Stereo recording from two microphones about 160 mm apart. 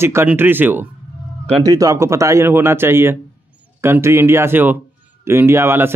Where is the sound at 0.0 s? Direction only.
15° right (ahead or behind).